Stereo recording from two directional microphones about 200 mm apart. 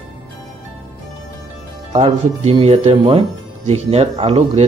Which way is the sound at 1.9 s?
30° right (ahead or behind).